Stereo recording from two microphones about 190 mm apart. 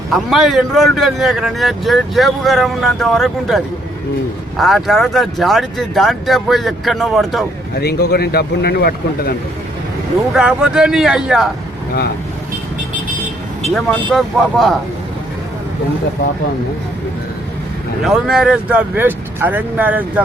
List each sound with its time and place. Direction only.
0.1 s speech: centre (ahead or behind)
7.8 s speech: 55° left (ahead or behind)
10.3 s speech: 5° right (ahead or behind)
13.7 s speech: centre (ahead or behind)
18.0 s speech: centre (ahead or behind)